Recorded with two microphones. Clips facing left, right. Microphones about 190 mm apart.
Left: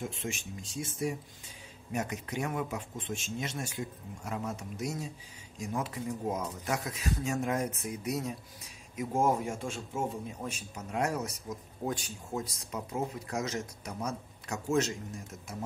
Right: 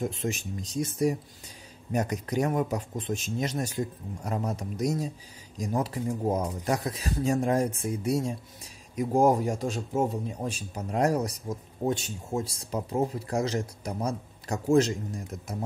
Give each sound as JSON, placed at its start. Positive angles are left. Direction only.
{"t": 0.0, "sound": "speech", "side_deg": -40}